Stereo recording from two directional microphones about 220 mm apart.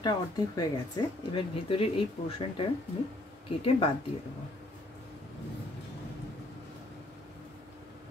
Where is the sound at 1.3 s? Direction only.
25° left (ahead or behind).